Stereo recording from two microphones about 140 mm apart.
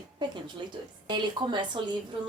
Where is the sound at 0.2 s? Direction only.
30° right (ahead or behind).